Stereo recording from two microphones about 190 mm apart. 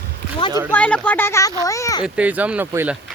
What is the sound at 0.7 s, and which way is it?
Speech, 10° left (ahead or behind).